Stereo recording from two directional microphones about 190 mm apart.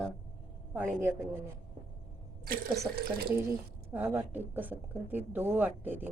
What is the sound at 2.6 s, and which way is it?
Speech, 15° right (ahead or behind).